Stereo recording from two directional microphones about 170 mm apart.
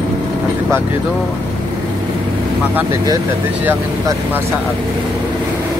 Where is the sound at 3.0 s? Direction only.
15° right (ahead or behind).